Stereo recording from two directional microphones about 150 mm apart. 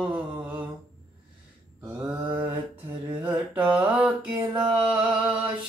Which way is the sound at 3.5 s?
10° right (ahead or behind).